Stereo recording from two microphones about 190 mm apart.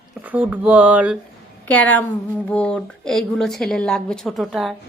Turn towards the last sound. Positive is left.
turn(degrees=0)  # may be behind; listen again after turning